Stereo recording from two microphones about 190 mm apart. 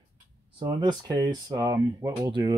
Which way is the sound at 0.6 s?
20° right (ahead or behind).